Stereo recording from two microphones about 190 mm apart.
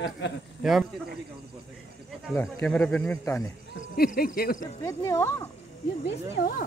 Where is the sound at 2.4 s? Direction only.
5° left (ahead or behind).